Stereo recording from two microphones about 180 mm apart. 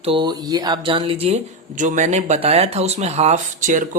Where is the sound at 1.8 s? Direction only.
45° right (ahead or behind).